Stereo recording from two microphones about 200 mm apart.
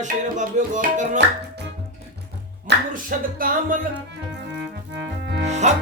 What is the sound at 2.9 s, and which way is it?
Speech, 45° right (ahead or behind).